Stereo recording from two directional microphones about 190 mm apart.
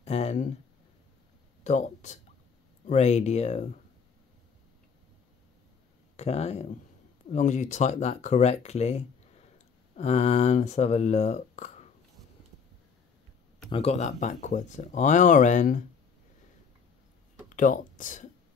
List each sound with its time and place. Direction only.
0.0 s a sound: 35° left (ahead or behind)
1.6 s speech: 40° left (ahead or behind)
6.1 s speech: 35° left (ahead or behind)
13.7 s speech: 30° left (ahead or behind)
17.5 s speech: 45° left (ahead or behind)